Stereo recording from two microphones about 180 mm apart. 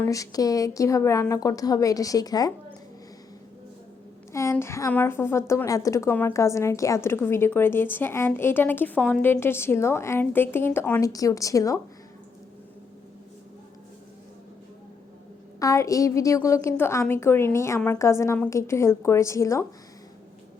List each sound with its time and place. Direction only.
0.0 s a woman's voice: 20° left (ahead or behind)
4.3 s a woman's voice: 15° left (ahead or behind)
15.5 s a woman's voice: 15° left (ahead or behind)